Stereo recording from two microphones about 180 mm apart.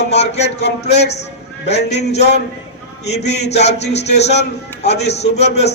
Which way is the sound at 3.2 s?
35° left (ahead or behind).